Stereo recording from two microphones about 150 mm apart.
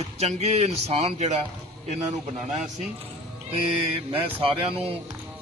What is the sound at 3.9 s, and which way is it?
Speech, 40° right (ahead or behind).